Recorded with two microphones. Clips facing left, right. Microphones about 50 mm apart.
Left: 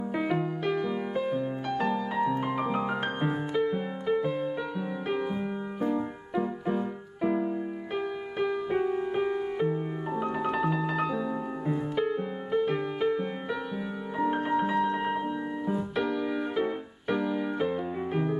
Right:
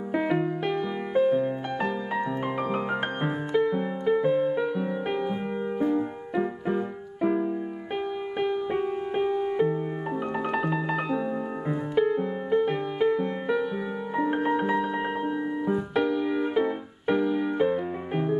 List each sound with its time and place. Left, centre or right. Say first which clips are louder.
0.1 s music: right 4 dB; centre
3.3 s music: right 4 dB; centre
4.2 s music: right 6 dB; right
4.5 s music: right 6 dB; centre
8.8 s music: right 1 dB; centre
11.9 s music: right 8 dB; centre
12.4 s music: right 2 dB; centre
14.2 s music: right 1 dB; centre
15.9 s music: right 4 dB; centre